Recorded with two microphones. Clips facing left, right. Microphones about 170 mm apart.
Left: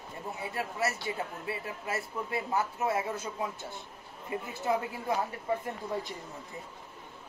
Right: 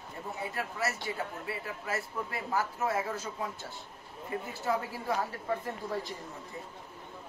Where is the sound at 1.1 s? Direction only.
20° left (ahead or behind).